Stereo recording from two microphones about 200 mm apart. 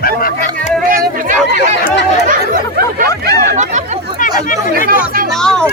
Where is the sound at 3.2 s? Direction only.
50° right (ahead or behind).